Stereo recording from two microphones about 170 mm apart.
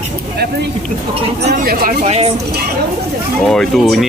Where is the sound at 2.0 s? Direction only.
35° right (ahead or behind).